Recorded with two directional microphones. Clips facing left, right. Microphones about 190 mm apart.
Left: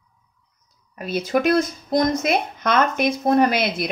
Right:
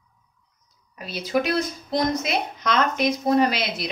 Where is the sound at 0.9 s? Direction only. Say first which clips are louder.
Left 3 dB; 50° left (ahead or behind).